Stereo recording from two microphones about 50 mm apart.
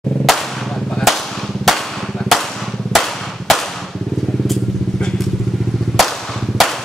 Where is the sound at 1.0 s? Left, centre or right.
Centre.